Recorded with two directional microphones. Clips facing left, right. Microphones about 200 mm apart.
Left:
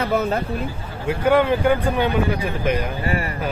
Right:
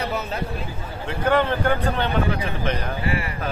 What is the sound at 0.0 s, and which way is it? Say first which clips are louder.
Speech: left 7 dB; 55° left (ahead or behind).